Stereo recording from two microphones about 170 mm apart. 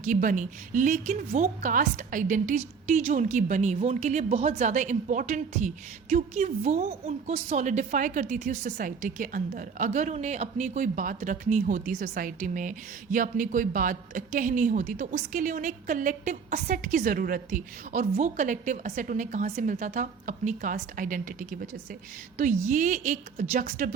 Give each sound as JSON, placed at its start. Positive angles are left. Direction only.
{"t": 0.0, "sound": "a woman's voice", "side_deg": -50}